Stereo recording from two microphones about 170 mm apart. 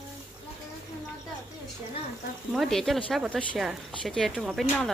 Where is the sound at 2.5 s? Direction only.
Centre (ahead or behind).